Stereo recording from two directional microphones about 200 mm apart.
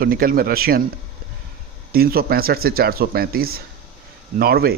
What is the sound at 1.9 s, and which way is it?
Speech, 50° right (ahead or behind).